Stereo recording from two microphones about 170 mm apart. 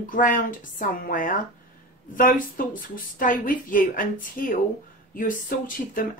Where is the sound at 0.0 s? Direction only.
50° left (ahead or behind).